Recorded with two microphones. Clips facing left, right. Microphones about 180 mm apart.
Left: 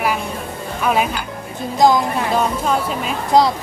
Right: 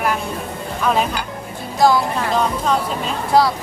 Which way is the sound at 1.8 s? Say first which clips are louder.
Left 1 dB; 20° left (ahead or behind).